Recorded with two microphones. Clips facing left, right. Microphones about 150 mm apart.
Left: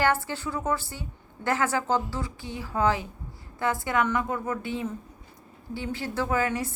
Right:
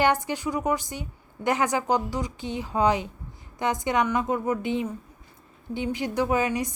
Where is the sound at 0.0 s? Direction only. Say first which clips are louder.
Right 2 dB; 15° right (ahead or behind).